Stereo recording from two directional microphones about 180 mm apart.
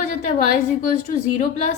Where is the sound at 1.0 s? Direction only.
45° left (ahead or behind).